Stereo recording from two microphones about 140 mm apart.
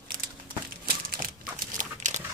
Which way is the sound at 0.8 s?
90° right.